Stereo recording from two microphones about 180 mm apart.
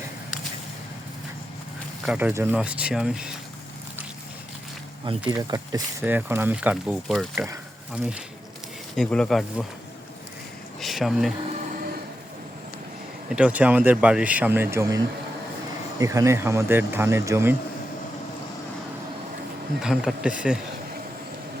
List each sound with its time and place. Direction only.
2.0 s speech: 10° right (ahead or behind)
5.1 s speech: 30° right (ahead or behind); by 7.4 s centre (ahead or behind)
7.4 s speech: 10° right (ahead or behind)
9.0 s speech: 5° left (ahead or behind)
10.8 s speech: centre (ahead or behind)
13.3 s speech: 5° right (ahead or behind)
19.8 s speech: centre (ahead or behind)